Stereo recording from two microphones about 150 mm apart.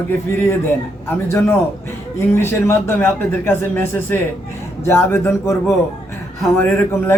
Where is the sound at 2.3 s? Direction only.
15° left (ahead or behind).